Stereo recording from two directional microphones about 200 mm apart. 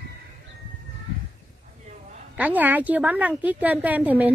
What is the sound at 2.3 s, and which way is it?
A woman's voice, 10° right (ahead or behind).